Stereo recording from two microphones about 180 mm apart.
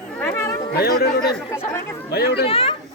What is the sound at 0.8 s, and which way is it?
Speech, 60° left (ahead or behind).